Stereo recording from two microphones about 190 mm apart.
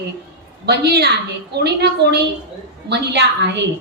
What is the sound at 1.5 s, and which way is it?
A woman's voice, 60° right (ahead or behind).